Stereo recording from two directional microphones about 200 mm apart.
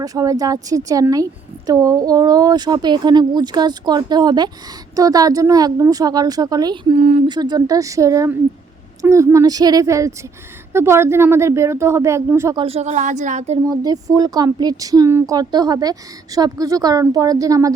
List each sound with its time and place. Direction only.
0.0 s a woman's voice: 15° right (ahead or behind)
7.0 s speech: 30° right (ahead or behind)
7.3 s speech: 20° right (ahead or behind)
12.6 s speech: 30° right (ahead or behind)
13.7 s a woman's voice: 20° right (ahead or behind)